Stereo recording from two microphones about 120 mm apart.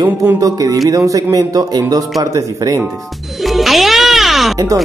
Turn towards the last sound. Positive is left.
turn(degrees=0)  # may be behind; listen again after turning